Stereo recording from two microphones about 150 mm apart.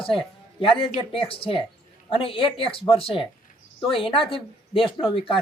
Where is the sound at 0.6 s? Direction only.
35° left (ahead or behind).